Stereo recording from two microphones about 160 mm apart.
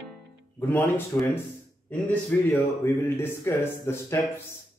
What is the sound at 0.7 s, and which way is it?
Speech, 15° left (ahead or behind).